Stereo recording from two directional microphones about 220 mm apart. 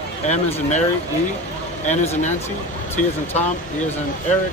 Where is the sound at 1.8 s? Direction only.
30° left (ahead or behind).